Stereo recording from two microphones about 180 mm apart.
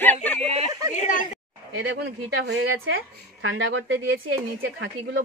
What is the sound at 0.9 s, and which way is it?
Speech, 45° left (ahead or behind).